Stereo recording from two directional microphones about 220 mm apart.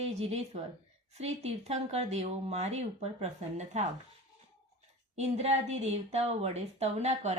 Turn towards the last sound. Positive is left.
turn(degrees=-30)  # may be behind; listen again after turning